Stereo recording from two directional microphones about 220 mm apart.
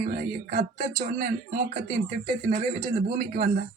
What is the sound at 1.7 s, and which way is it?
A man's voice, 40° right (ahead or behind).